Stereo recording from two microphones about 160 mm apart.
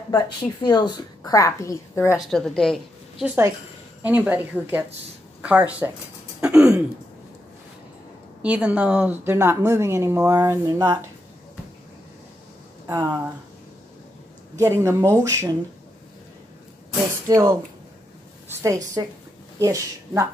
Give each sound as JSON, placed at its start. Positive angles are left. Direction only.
{"t": 0.1, "sound": "a woman's voice", "side_deg": 25}
{"t": 2.1, "sound": "a woman's voice", "side_deg": 0}
{"t": 3.3, "sound": "a woman's voice", "side_deg": -15}
{"t": 6.4, "sound": "throat clearing", "side_deg": -5}
{"t": 8.4, "sound": "a woman's voice", "side_deg": -10}
{"t": 14.6, "sound": "a woman's voice", "side_deg": -15}
{"t": 17.3, "sound": "a woman's voice", "side_deg": -20}
{"t": 18.5, "sound": "a sound", "side_deg": -20}
{"t": 19.6, "sound": "a woman's voice", "side_deg": -20}